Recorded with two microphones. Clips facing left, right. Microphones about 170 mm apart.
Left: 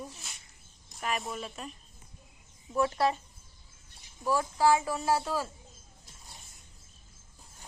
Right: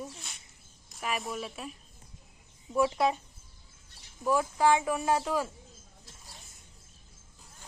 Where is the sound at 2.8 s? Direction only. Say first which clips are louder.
Right 1 dB; 10° right (ahead or behind).